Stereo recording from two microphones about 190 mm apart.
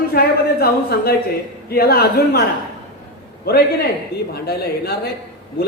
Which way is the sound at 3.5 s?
50° left (ahead or behind).